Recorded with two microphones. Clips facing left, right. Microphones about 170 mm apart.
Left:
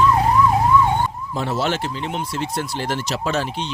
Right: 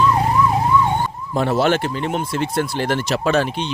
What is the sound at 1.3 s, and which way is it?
Speech, 55° right (ahead or behind).